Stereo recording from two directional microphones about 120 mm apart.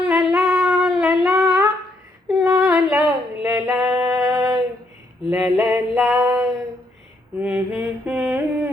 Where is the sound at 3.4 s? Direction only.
20° right (ahead or behind).